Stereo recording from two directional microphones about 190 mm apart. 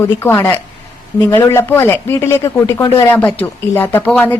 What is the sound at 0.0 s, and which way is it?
A woman's voice, 10° left (ahead or behind).